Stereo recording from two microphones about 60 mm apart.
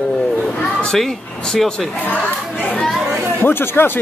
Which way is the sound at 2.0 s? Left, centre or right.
Left.